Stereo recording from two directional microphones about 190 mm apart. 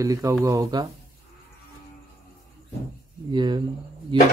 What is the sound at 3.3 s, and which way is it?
Speech, 25° right (ahead or behind).